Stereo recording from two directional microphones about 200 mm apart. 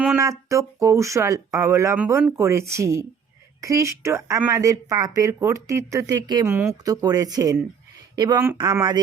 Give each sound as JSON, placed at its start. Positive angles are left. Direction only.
{"t": 0.2, "sound": "speech", "side_deg": -15}